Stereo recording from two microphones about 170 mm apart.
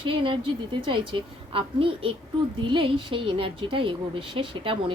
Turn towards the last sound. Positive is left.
turn(degrees=-30)  # may be behind; listen again after turning